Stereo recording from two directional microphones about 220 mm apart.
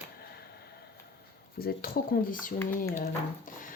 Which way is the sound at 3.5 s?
35° left (ahead or behind).